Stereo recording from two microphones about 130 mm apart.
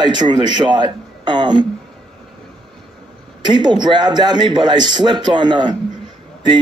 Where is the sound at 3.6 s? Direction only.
35° right (ahead or behind).